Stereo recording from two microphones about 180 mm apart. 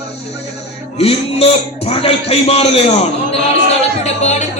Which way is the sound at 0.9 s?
35° left (ahead or behind).